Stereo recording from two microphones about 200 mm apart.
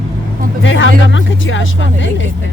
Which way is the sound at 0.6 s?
70° left (ahead or behind).